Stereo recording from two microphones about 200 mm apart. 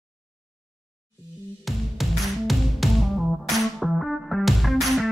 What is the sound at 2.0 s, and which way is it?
Music, centre (ahead or behind).